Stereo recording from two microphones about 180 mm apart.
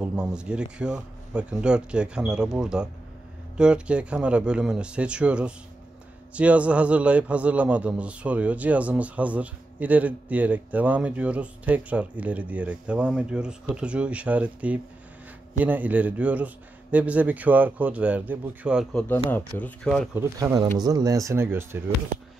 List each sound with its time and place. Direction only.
0.0 s a man's voice: 5° right (ahead or behind)
18.9 s speech: 10° left (ahead or behind)
20.2 s a man's voice: 15° right (ahead or behind)